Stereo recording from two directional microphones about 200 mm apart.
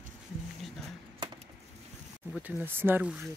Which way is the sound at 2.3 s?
10° right (ahead or behind).